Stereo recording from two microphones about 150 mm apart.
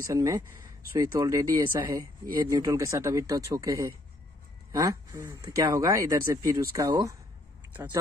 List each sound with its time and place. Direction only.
0.0 s speech: 20° right (ahead or behind)